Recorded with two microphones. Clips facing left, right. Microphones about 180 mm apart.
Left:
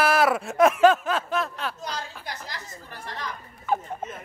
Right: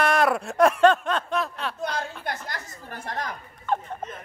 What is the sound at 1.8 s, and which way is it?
Chatter, 60° right (ahead or behind).